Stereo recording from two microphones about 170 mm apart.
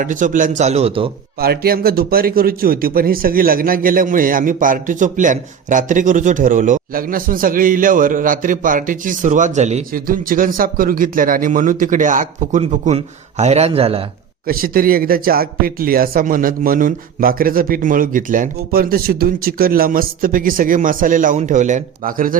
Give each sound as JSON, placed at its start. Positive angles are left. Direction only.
{"t": 0.0, "sound": "a man's voice", "side_deg": -50}
{"t": 1.4, "sound": "a man's voice", "side_deg": -65}
{"t": 9.9, "sound": "a man's voice", "side_deg": -55}
{"t": 14.4, "sound": "speech", "side_deg": -60}